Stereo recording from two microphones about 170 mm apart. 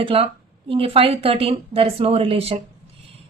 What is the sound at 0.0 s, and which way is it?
A woman's voice, 35° right (ahead or behind).